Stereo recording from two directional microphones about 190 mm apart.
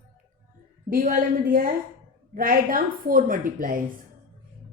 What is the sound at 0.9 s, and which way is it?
A woman's voice, 45° right (ahead or behind).